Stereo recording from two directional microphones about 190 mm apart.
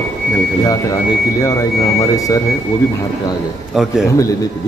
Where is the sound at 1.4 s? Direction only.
15° left (ahead or behind).